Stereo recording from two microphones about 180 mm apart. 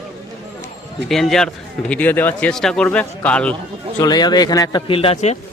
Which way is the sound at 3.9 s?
20° left (ahead or behind).